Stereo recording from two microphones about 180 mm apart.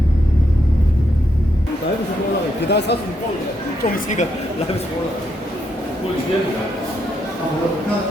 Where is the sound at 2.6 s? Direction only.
70° left (ahead or behind).